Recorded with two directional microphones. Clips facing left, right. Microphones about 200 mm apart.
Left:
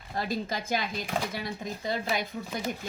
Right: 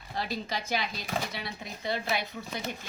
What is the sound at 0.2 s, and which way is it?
Speech, 50° left (ahead or behind).